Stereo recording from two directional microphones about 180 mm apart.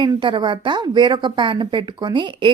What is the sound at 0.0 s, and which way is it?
A woman's voice, 25° right (ahead or behind).